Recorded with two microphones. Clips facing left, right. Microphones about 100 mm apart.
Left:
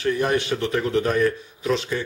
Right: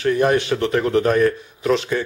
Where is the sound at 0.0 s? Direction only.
60° right (ahead or behind).